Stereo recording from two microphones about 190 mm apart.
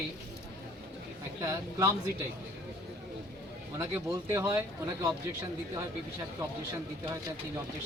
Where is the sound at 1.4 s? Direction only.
15° right (ahead or behind).